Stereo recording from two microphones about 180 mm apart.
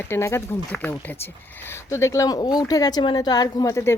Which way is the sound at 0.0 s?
15° left (ahead or behind).